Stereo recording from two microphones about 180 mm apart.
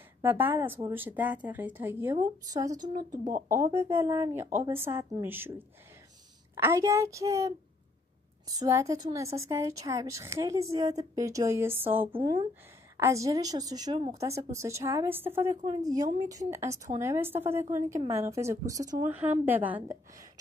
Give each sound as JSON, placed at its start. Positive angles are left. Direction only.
{"t": 0.2, "sound": "speech", "side_deg": -10}
{"t": 12.1, "sound": "a woman's voice", "side_deg": -25}
{"t": 12.9, "sound": "a woman's voice", "side_deg": -15}